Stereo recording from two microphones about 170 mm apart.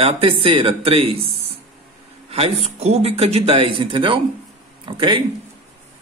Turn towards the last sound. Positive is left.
turn(degrees=-30)  # may be behind; listen again after turning